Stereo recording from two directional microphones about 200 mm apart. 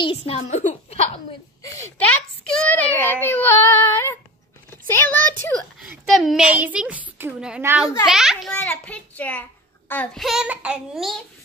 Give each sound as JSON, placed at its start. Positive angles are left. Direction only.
{"t": 0.0, "sound": "a woman's voice", "side_deg": 30}
{"t": 1.6, "sound": "a child's voice", "side_deg": 15}
{"t": 2.4, "sound": "speech", "side_deg": 5}
{"t": 4.6, "sound": "a sound", "side_deg": 10}
{"t": 5.8, "sound": "a child's voice", "side_deg": 0}